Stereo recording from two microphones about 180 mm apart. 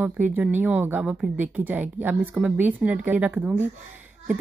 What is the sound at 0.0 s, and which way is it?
Speech, 10° right (ahead or behind).